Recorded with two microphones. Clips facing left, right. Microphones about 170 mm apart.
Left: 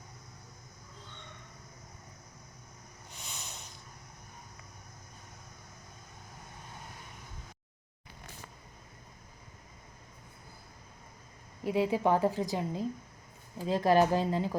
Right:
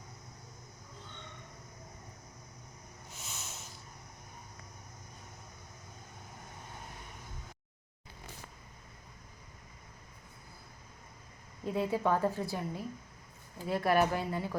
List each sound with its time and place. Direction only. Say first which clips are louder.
3.2 s hiss: left 1 dB; 5° right (ahead or behind)
11.6 s speech: left 3 dB; 15° left (ahead or behind)